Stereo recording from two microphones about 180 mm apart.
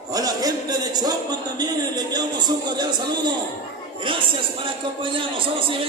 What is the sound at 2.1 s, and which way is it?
A man's voice, 25° right (ahead or behind).